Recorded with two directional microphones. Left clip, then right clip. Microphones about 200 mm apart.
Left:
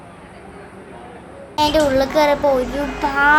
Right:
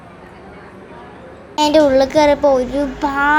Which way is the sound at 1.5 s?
30° right (ahead or behind).